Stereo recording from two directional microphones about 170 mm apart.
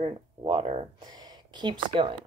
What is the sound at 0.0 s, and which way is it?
Speech, 35° right (ahead or behind).